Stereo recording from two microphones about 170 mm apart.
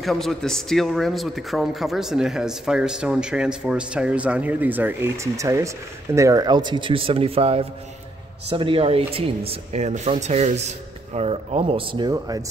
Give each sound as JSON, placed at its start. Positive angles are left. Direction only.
{"t": 0.0, "sound": "a man's voice", "side_deg": 0}